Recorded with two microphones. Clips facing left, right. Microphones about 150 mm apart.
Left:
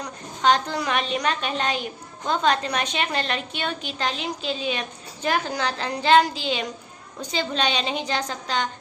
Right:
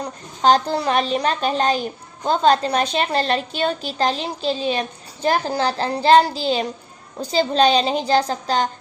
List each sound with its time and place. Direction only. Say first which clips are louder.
0.0 s a woman's voice: right 4 dB; 35° right (ahead or behind)